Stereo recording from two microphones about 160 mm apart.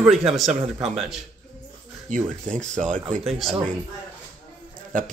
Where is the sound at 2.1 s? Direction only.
55° right (ahead or behind).